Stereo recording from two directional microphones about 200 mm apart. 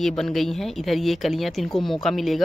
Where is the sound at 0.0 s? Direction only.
Centre (ahead or behind).